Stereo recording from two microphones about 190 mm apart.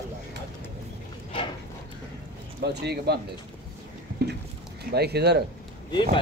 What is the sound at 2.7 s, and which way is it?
Speech, 60° right (ahead or behind).